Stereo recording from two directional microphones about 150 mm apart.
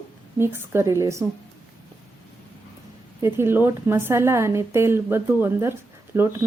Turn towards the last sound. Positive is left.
turn(degrees=-15)  # may be behind; listen again after turning